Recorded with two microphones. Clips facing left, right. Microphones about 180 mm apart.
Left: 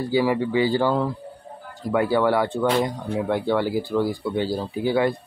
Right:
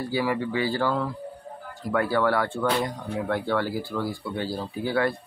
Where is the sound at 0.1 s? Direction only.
20° left (ahead or behind).